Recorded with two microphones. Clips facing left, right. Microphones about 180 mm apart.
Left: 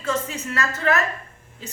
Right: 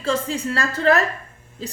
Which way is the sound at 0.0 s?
30° right (ahead or behind).